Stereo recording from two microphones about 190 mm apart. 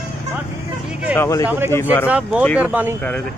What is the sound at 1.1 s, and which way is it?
Speech, 15° left (ahead or behind).